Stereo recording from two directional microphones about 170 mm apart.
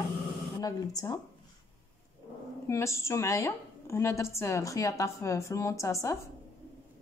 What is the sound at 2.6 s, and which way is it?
A woman's voice, 15° left (ahead or behind).